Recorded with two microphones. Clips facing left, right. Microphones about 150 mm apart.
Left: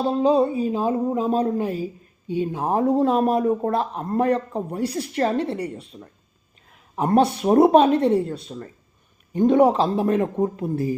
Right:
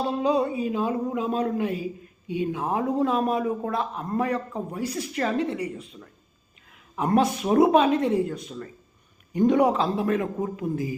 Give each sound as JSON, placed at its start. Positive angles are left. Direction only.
{"t": 0.0, "sound": "speech", "side_deg": 30}
{"t": 7.2, "sound": "speech", "side_deg": 35}